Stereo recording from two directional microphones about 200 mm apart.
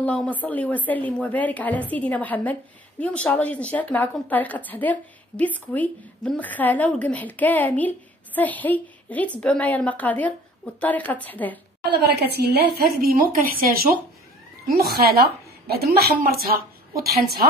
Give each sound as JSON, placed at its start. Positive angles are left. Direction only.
{"t": 0.0, "sound": "a woman's voice", "side_deg": 5}
{"t": 11.9, "sound": "a woman's voice", "side_deg": -55}